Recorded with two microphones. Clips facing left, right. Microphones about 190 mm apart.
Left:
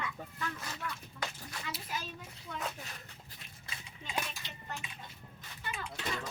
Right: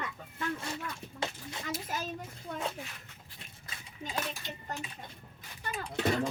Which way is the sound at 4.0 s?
40° right (ahead or behind).